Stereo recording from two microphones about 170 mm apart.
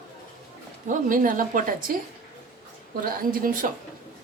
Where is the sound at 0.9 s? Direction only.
50° right (ahead or behind).